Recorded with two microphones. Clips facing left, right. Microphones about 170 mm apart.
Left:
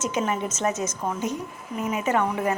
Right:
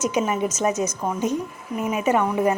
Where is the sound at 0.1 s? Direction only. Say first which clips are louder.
Right 3 dB; 15° right (ahead or behind).